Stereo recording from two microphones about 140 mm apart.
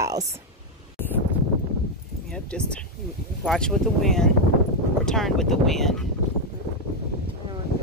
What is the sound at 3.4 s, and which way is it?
Speech, centre (ahead or behind).